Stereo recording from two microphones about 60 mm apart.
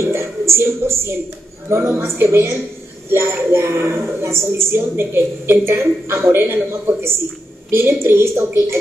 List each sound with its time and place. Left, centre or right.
0.0 s a woman's voice: right